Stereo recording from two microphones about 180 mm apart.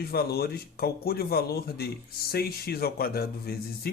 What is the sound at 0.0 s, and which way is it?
Speech, 60° left (ahead or behind).